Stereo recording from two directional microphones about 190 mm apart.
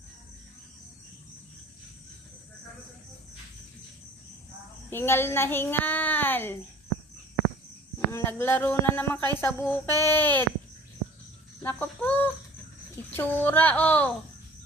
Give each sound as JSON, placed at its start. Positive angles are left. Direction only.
{"t": 4.9, "sound": "a child's voice", "side_deg": 10}
{"t": 7.9, "sound": "a child's voice", "side_deg": 10}
{"t": 11.6, "sound": "a child's voice", "side_deg": 10}